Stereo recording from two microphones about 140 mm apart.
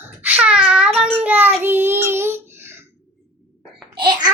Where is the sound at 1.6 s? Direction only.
15° right (ahead or behind).